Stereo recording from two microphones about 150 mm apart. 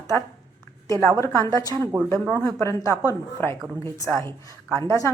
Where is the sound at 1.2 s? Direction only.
20° left (ahead or behind).